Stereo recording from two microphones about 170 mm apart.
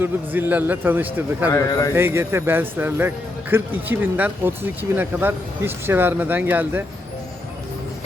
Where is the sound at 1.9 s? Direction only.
15° right (ahead or behind).